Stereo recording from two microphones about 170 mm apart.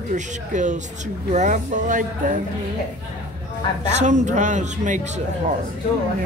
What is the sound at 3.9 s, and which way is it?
Speech, 45° right (ahead or behind).